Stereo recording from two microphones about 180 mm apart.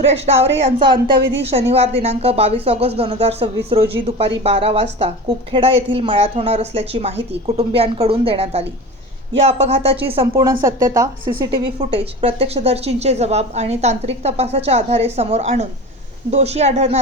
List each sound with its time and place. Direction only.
0.0 s a woman's voice: 35° right (ahead or behind)
10.6 s a woman's voice: 15° right (ahead or behind)
11.5 s a woman's voice: 30° right (ahead or behind)